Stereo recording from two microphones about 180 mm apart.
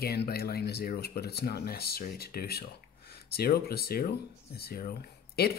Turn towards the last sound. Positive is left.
turn(degrees=60)  # may be behind; listen again after turning